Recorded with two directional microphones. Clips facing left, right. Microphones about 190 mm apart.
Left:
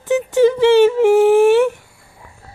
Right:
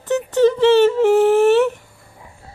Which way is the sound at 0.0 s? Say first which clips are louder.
Left 2 dB; 10° left (ahead or behind).